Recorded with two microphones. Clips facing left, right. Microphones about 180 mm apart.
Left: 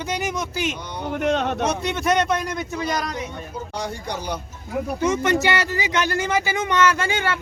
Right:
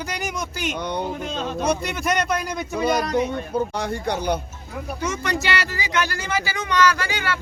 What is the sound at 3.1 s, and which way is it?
Speech, 60° right (ahead or behind).